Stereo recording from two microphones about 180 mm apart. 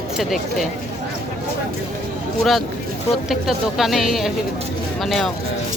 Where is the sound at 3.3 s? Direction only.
Centre (ahead or behind).